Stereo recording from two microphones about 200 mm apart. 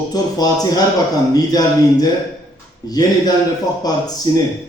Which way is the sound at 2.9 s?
20° left (ahead or behind).